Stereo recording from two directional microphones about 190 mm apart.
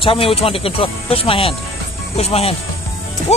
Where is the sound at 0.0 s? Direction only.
30° left (ahead or behind).